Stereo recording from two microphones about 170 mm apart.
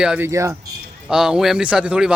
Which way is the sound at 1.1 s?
5° right (ahead or behind).